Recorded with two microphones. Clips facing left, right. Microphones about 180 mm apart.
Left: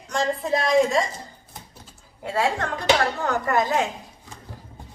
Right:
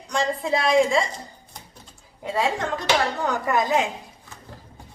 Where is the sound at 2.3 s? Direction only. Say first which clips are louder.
Even; 20° right (ahead or behind).